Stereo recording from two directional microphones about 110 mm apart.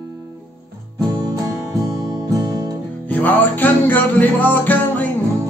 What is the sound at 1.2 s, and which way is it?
Music, 30° right (ahead or behind).